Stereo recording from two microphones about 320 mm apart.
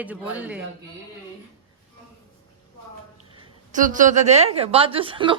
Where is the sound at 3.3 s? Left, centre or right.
Right.